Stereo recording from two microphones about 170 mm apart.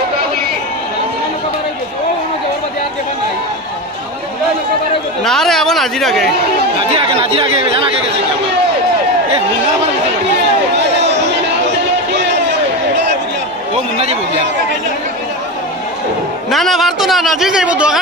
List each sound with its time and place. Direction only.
5.2 s a woman's voice: centre (ahead or behind)
6.9 s speech: 35° right (ahead or behind)
11.1 s chatter: 90° right
16.4 s a man's voice: centre (ahead or behind)